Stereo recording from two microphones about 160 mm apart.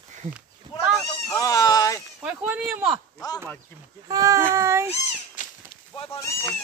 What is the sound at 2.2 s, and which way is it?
Speech, 10° right (ahead or behind).